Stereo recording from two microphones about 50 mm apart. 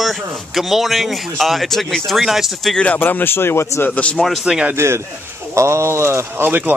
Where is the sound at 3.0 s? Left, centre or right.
Left.